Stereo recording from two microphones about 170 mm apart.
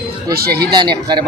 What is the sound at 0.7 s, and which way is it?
Speech, 25° right (ahead or behind).